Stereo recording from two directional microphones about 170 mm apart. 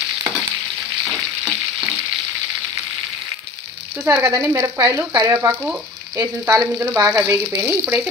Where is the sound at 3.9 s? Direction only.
10° right (ahead or behind).